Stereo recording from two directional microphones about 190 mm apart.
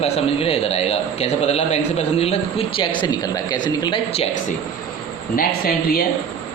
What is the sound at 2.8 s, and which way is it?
A woman's voice, 20° left (ahead or behind).